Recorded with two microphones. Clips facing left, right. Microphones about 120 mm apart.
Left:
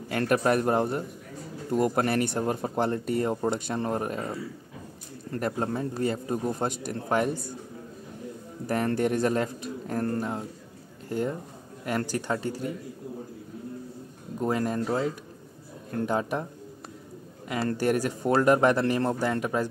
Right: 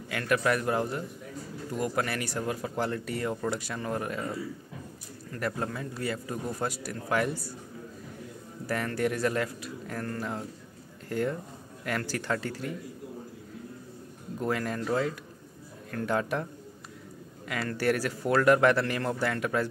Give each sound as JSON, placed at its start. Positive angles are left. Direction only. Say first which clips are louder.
{"t": 0.1, "sound": "a man's voice", "louder": "left 3 dB", "side_deg": 35}
{"t": 8.6, "sound": "a man's voice", "louder": "left 4 dB", "side_deg": 25}
{"t": 11.1, "sound": "speech", "louder": "left 1 dB", "side_deg": 20}
{"t": 14.4, "sound": "a man's voice", "louder": "left 4 dB", "side_deg": 20}
{"t": 17.5, "sound": "speech", "louder": "left 5 dB", "side_deg": 30}
{"t": 17.7, "sound": "a man's voice", "louder": "even", "side_deg": 20}